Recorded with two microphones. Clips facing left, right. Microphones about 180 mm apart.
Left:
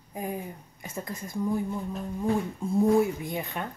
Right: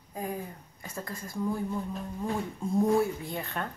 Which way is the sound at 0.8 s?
20° left (ahead or behind).